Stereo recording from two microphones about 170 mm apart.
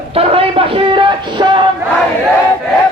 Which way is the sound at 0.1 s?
35° right (ahead or behind).